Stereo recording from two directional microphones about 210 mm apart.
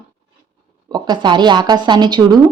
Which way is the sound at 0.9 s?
20° right (ahead or behind).